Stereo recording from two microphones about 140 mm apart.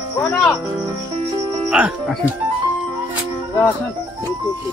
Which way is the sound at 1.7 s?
5° right (ahead or behind).